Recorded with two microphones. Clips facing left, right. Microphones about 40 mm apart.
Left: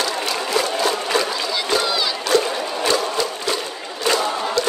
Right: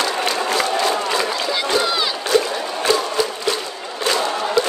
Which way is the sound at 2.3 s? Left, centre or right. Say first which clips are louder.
Right 1 dB; right.